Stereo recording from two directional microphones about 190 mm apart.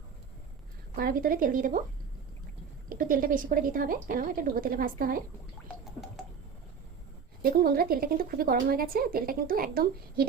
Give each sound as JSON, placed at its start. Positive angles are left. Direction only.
{"t": 0.9, "sound": "speech", "side_deg": -50}
{"t": 2.9, "sound": "speech", "side_deg": -45}
{"t": 7.4, "sound": "speech", "side_deg": -55}